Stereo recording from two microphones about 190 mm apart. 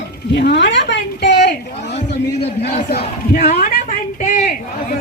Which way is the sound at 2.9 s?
55° left (ahead or behind).